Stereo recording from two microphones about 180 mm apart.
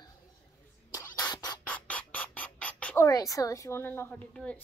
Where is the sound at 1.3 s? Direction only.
20° left (ahead or behind).